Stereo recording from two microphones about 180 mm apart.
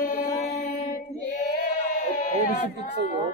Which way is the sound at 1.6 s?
50° left (ahead or behind).